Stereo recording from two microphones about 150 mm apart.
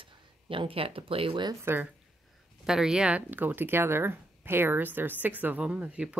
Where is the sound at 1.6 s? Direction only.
15° right (ahead or behind).